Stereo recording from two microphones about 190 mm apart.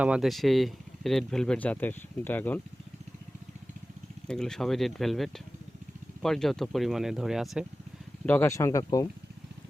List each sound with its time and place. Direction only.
0.0 s speech: 5° right (ahead or behind)
4.3 s speech: 5° left (ahead or behind)
8.3 s speech: 15° left (ahead or behind)